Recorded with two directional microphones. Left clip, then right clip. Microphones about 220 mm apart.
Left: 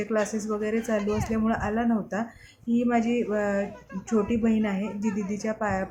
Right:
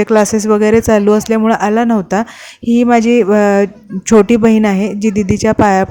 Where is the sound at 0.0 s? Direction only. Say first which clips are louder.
Right 16 dB; 45° right (ahead or behind).